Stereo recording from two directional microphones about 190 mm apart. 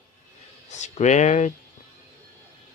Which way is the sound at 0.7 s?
35° left (ahead or behind).